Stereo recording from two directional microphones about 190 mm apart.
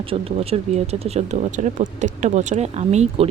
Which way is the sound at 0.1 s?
30° right (ahead or behind).